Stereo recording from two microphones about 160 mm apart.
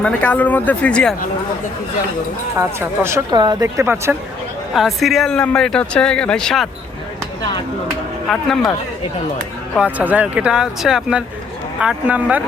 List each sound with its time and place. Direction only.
0.0 s speech: 10° left (ahead or behind)
2.6 s speech: 15° right (ahead or behind)
3.3 s a woman's voice: 25° right (ahead or behind)
4.7 s speech: centre (ahead or behind)
8.3 s speech: centre (ahead or behind)
9.7 s speech: 10° right (ahead or behind)